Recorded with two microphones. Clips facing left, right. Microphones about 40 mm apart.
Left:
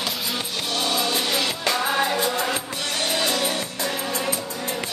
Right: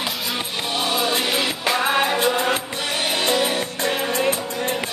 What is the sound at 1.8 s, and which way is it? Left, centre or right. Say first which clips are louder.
Music: right 4 dB; right.